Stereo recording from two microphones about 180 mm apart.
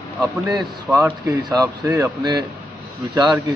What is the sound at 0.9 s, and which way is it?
A man's voice, 15° right (ahead or behind).